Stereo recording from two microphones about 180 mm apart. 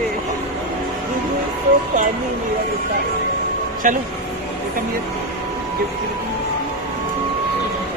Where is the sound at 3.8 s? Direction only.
45° right (ahead or behind).